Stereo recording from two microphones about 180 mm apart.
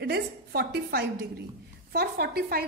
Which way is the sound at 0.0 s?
60° right (ahead or behind).